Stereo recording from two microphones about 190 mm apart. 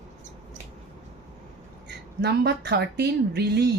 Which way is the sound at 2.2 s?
60° right (ahead or behind).